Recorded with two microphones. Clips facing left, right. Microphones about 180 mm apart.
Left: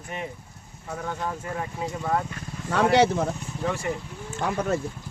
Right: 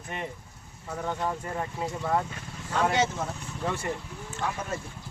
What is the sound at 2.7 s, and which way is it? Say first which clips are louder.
Speech: left 6 dB; 65° left (ahead or behind).